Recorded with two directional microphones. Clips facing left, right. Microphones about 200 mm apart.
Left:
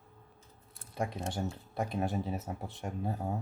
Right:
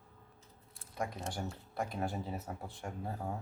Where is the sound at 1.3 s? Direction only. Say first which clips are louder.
Left 4 dB; 20° left (ahead or behind).